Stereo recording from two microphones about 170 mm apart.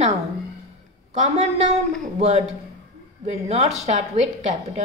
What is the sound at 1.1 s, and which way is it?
A woman's voice, 40° right (ahead or behind).